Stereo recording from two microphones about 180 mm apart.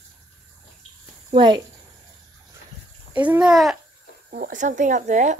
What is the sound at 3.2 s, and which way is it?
Speech, 5° right (ahead or behind).